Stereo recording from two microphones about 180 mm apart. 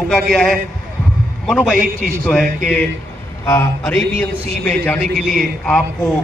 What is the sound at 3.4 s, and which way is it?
A man's voice, 15° left (ahead or behind).